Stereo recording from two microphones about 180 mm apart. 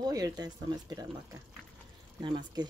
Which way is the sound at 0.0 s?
20° right (ahead or behind).